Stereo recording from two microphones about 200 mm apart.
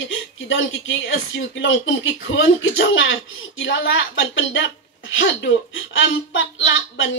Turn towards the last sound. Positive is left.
turn(degrees=75)  # may be behind; listen again after turning